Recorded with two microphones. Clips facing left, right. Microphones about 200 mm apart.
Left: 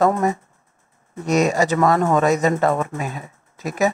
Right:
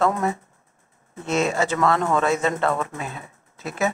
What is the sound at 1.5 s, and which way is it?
Speech, 10° left (ahead or behind).